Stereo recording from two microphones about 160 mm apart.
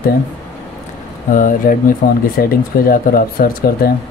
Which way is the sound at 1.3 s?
60° left (ahead or behind).